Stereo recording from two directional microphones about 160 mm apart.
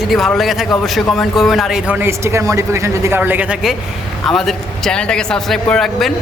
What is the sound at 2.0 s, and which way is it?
A man's voice, 15° right (ahead or behind).